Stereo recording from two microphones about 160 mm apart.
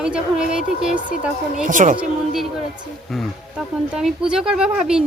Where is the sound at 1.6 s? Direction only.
55° right (ahead or behind).